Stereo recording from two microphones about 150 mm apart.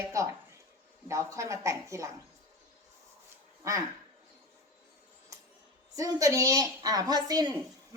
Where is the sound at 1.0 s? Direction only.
20° right (ahead or behind).